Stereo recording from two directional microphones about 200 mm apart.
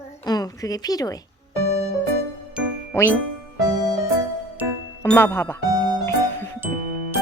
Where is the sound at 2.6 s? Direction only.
5° right (ahead or behind).